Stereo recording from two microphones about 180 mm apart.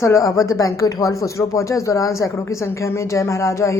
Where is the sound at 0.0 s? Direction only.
20° left (ahead or behind).